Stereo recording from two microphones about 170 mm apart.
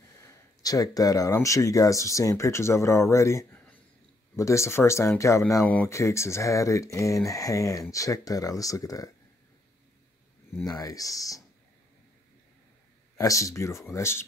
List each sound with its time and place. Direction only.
0.2 s speech: 20° left (ahead or behind)
10.7 s speech: 20° left (ahead or behind)
13.2 s speech: 20° left (ahead or behind)